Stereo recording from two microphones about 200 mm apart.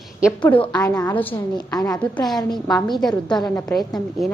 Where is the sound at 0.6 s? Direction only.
20° left (ahead or behind).